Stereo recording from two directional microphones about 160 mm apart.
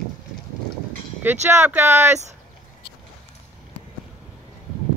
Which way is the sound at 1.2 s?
15° right (ahead or behind).